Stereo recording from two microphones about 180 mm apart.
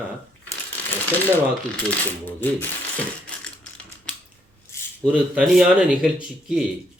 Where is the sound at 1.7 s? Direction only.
10° left (ahead or behind).